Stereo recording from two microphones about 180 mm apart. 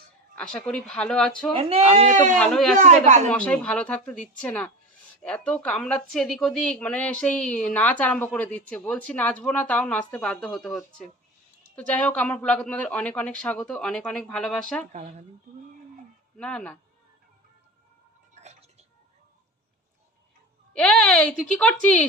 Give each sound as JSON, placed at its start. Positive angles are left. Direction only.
{"t": 0.3, "sound": "speech", "side_deg": 5}
{"t": 1.5, "sound": "speech", "side_deg": -35}
{"t": 2.4, "sound": "speech", "side_deg": 0}
{"t": 2.7, "sound": "speech", "side_deg": -40}
{"t": 3.2, "sound": "speech", "side_deg": 5}
{"t": 16.4, "sound": "speech", "side_deg": 5}
{"t": 20.7, "sound": "speech", "side_deg": 5}